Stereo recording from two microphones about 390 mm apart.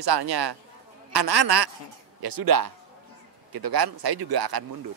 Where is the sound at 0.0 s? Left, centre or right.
Right.